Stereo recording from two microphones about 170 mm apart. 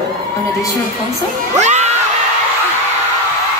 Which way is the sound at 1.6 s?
40° right (ahead or behind).